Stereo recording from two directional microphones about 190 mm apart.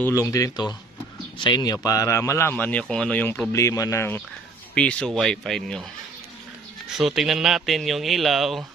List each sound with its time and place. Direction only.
0.0 s a man's voice: 15° left (ahead or behind)
6.9 s speech: centre (ahead or behind)